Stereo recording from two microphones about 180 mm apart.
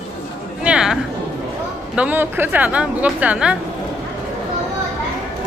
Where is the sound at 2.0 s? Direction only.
10° right (ahead or behind).